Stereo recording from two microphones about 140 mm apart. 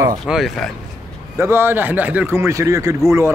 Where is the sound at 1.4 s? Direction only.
15° right (ahead or behind).